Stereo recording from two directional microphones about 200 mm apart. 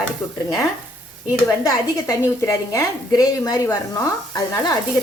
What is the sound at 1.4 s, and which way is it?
A woman's voice, 15° left (ahead or behind).